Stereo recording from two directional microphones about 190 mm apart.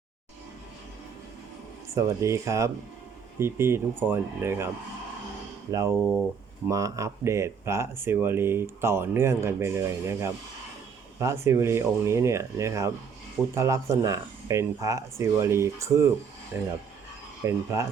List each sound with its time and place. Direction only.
2.0 s speech: 15° right (ahead or behind)